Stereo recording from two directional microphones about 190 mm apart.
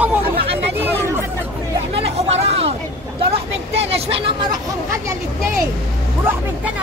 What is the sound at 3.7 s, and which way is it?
Vehicle, 30° right (ahead or behind).